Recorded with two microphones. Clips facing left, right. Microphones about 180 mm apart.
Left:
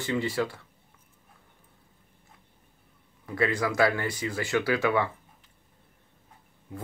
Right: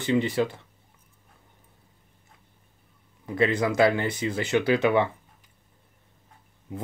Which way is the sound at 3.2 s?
20° right (ahead or behind).